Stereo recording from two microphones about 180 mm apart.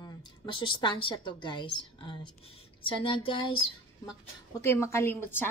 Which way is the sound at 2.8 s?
30° left (ahead or behind).